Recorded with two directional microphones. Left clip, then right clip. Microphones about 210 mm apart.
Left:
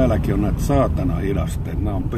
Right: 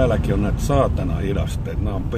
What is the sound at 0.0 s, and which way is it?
Speech, 15° left (ahead or behind).